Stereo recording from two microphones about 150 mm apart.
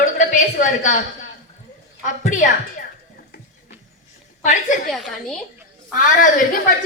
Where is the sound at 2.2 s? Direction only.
55° left (ahead or behind).